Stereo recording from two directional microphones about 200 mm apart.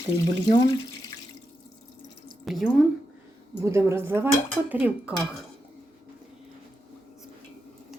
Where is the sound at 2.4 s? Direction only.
Centre (ahead or behind).